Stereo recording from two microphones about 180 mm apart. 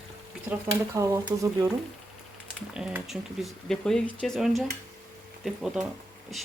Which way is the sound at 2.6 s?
5° right (ahead or behind).